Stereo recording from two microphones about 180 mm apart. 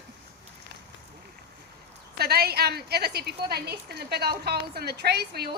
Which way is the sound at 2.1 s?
60° right (ahead or behind).